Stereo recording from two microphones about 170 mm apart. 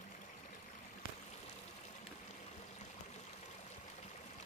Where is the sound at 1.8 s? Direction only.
45° left (ahead or behind).